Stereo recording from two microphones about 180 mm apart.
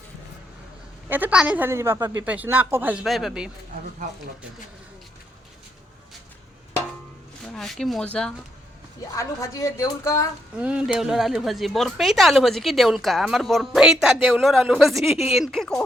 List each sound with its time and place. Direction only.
1.1 s a woman's voice: 10° right (ahead or behind)
7.4 s speech: centre (ahead or behind)
9.1 s a woman's voice: 15° left (ahead or behind)
10.6 s a woman's voice: 5° right (ahead or behind)